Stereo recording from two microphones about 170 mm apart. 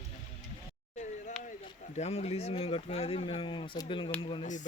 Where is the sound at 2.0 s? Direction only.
40° left (ahead or behind).